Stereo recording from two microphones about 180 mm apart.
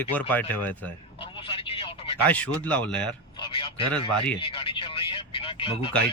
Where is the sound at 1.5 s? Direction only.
30° left (ahead or behind).